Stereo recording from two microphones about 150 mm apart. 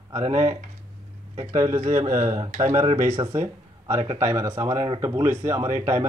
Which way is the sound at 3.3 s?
20° right (ahead or behind).